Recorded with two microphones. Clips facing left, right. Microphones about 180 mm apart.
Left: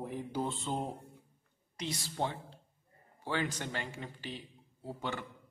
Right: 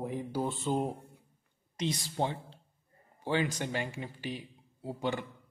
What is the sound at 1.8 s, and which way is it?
A man's voice, 20° right (ahead or behind).